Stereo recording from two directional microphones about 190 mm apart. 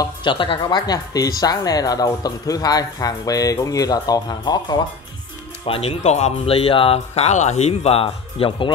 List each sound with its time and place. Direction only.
0.0 s speech: 25° left (ahead or behind)